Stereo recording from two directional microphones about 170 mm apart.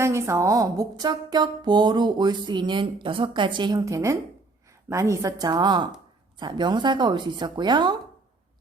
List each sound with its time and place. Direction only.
0.0 s a woman's voice: 15° right (ahead or behind)